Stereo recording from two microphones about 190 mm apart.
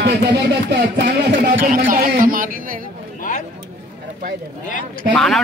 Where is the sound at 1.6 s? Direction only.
45° right (ahead or behind).